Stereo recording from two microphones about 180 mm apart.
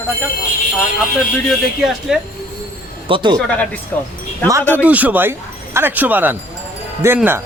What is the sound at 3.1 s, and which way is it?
Speech, 25° right (ahead or behind).